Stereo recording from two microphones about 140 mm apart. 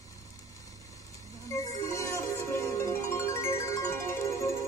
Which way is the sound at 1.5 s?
20° left (ahead or behind).